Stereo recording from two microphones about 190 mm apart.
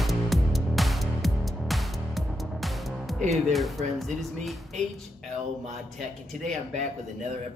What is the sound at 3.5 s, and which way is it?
Speech, centre (ahead or behind).